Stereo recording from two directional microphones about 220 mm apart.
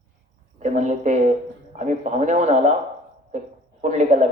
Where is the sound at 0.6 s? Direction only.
30° right (ahead or behind).